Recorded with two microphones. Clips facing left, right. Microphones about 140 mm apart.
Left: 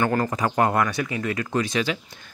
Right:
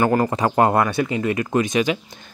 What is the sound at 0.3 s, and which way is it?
Speech, 30° right (ahead or behind).